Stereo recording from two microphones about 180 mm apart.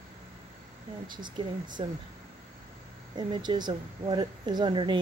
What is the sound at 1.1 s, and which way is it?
Speech, 25° right (ahead or behind).